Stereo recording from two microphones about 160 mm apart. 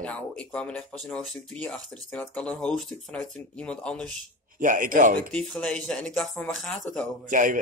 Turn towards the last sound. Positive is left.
turn(degrees=-55)  # may be behind; listen again after turning